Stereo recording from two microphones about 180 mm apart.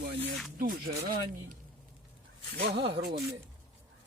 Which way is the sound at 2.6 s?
60° right (ahead or behind).